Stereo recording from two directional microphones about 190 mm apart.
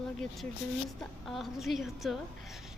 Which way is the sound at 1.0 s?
Centre (ahead or behind).